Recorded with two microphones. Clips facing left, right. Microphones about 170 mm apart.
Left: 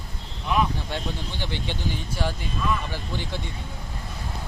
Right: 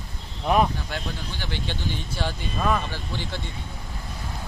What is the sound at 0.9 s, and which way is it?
Speech, 25° left (ahead or behind).